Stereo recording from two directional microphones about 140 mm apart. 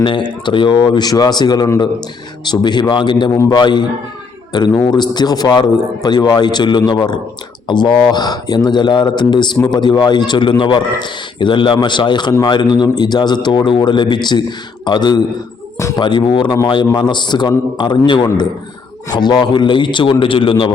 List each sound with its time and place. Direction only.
0.0 s a man's voice: 35° left (ahead or behind)